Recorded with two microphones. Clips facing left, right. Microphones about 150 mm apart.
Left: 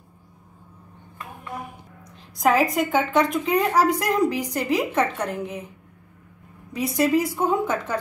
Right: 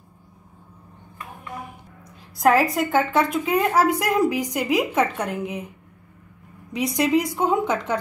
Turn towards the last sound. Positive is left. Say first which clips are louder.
# right 1 dB
turn(degrees=-15)  # may be behind; listen again after turning